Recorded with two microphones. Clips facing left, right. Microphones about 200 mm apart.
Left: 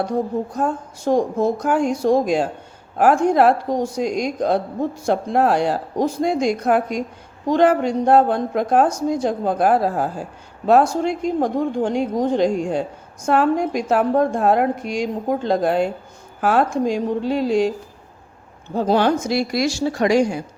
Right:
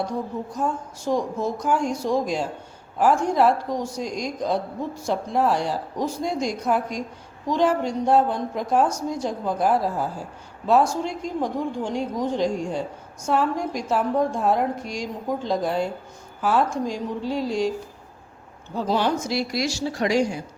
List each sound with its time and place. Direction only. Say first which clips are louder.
0.0 s a woman's voice: left 6 dB; 55° left (ahead or behind)
18.7 s speech: left 6 dB; 55° left (ahead or behind)